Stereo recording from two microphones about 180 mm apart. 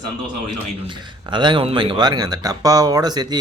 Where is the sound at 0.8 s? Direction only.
25° right (ahead or behind).